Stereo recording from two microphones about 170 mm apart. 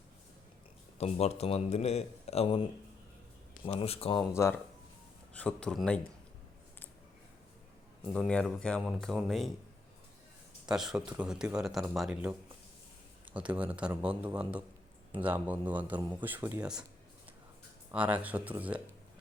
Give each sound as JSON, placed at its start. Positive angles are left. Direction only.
{"t": 0.9, "sound": "a man's voice", "side_deg": 40}
{"t": 3.7, "sound": "a man's voice", "side_deg": 35}
{"t": 4.3, "sound": "a man's voice", "side_deg": 15}
{"t": 8.1, "sound": "speech", "side_deg": 5}
{"t": 10.7, "sound": "speech", "side_deg": -5}
{"t": 17.9, "sound": "speech", "side_deg": -10}